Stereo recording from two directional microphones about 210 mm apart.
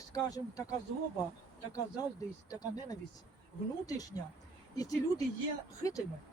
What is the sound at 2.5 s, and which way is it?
Speech, 20° left (ahead or behind).